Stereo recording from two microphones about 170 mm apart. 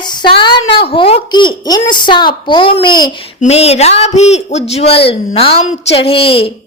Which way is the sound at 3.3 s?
40° left (ahead or behind).